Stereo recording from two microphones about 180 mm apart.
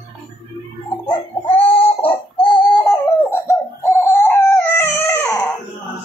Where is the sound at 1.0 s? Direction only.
30° left (ahead or behind).